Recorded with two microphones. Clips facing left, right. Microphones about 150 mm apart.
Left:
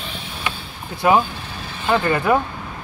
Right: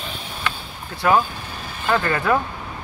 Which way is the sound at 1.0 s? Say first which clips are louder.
Left 2 dB; 20° left (ahead or behind).